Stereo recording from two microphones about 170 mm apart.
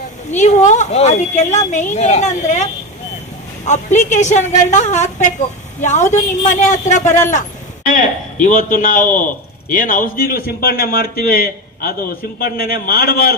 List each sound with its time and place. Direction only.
0.3 s speech: 45° left (ahead or behind)
3.7 s a man's voice: 45° left (ahead or behind); by 13.3 s 60° left (ahead or behind)